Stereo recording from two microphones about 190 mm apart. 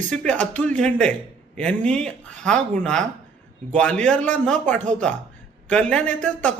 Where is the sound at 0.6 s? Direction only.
5° left (ahead or behind).